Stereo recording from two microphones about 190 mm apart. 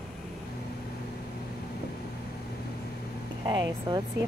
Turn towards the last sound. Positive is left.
turn(degrees=-25)  # may be behind; listen again after turning